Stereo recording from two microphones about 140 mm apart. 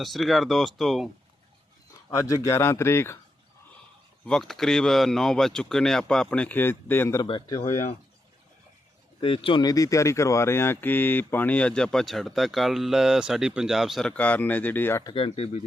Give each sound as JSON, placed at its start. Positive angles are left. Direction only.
{"t": 0.0, "sound": "speech", "side_deg": 0}
{"t": 2.0, "sound": "speech", "side_deg": 20}
{"t": 4.3, "sound": "speech", "side_deg": 5}
{"t": 7.2, "sound": "speech", "side_deg": 30}
{"t": 9.2, "sound": "speech", "side_deg": 40}
{"t": 14.2, "sound": "speech", "side_deg": 10}
{"t": 15.0, "sound": "speech", "side_deg": 40}